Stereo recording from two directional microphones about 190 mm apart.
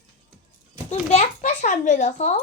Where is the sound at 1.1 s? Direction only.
35° left (ahead or behind).